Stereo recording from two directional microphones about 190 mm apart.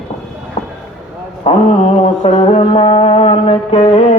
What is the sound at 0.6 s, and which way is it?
Vehicle, 30° left (ahead or behind).